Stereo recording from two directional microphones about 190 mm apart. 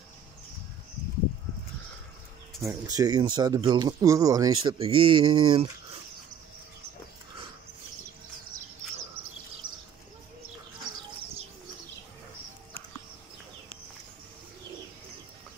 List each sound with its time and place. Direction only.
2.6 s speech: 15° right (ahead or behind)